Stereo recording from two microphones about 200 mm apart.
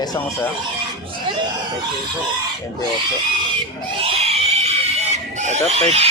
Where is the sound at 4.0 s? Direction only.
30° right (ahead or behind).